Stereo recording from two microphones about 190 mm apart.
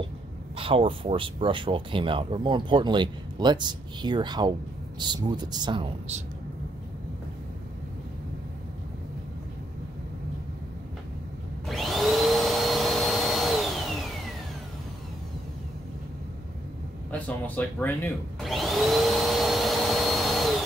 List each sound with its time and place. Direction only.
0.6 s speech: 30° right (ahead or behind)
11.6 s vacuum cleaner: centre (ahead or behind)
17.1 s a sound: 5° left (ahead or behind)
18.4 s vacuum cleaner: centre (ahead or behind)